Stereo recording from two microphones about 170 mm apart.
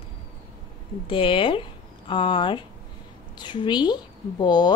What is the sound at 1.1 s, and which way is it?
A woman's voice, 30° left (ahead or behind).